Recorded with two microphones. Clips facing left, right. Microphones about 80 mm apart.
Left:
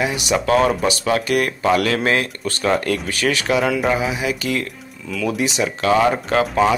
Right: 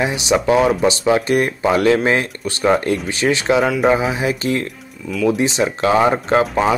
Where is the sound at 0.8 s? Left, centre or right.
Right.